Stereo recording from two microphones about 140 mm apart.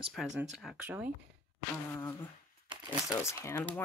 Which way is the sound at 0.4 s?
5° right (ahead or behind).